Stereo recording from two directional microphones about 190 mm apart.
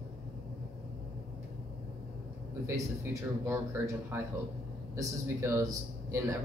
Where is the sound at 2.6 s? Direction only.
15° right (ahead or behind).